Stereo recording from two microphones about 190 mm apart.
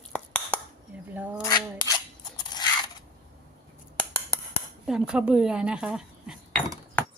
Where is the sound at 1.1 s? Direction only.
10° right (ahead or behind).